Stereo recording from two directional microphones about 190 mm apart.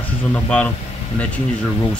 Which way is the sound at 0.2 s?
5° left (ahead or behind).